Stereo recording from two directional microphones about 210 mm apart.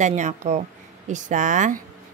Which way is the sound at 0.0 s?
35° right (ahead or behind).